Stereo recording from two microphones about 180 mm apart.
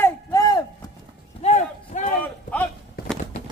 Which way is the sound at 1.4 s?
40° left (ahead or behind).